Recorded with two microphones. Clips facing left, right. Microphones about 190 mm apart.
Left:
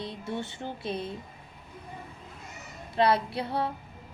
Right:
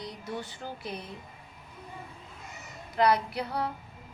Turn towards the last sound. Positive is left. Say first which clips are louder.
# left 2 dB
turn(degrees=25)  # may be behind; listen again after turning